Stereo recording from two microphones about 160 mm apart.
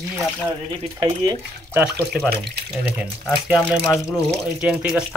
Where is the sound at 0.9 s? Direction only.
25° right (ahead or behind).